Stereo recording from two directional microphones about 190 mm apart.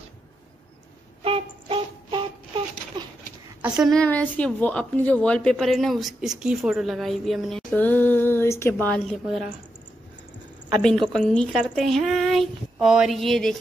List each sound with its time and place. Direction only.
1.2 s a sound: 30° right (ahead or behind)
3.7 s a woman's voice: centre (ahead or behind)
10.8 s a woman's voice: 5° left (ahead or behind)